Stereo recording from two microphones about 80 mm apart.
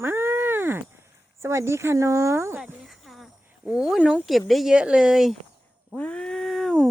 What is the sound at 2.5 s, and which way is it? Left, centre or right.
Speech, centre.